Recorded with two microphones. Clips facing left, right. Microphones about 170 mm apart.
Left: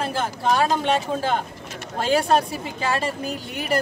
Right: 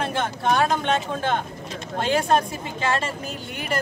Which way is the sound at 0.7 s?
35° left (ahead or behind).